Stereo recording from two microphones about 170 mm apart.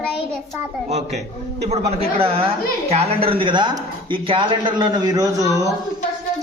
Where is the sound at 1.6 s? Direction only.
40° right (ahead or behind); by 5.6 s 20° right (ahead or behind).